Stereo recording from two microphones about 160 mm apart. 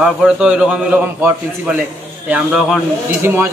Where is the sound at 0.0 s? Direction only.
5° right (ahead or behind).